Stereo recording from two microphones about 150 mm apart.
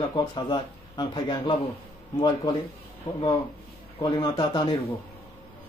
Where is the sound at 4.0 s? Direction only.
30° left (ahead or behind).